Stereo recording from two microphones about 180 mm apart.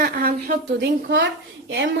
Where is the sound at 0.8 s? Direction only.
75° right (ahead or behind).